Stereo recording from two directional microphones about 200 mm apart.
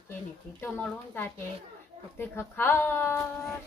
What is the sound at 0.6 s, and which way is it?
A woman's voice, 10° left (ahead or behind).